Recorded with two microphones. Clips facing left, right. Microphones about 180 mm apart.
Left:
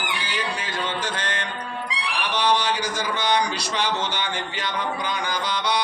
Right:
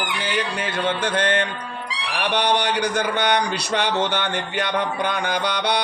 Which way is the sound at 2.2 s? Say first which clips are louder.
Right 2 dB; 60° right (ahead or behind).